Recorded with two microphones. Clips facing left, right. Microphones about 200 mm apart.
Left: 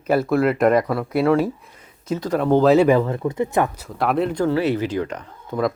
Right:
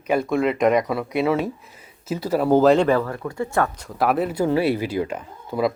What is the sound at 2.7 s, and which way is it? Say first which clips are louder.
Speech: left 3 dB; 5° left (ahead or behind).